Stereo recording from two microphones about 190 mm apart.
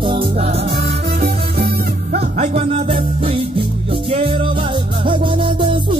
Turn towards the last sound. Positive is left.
turn(degrees=-25)  # may be behind; listen again after turning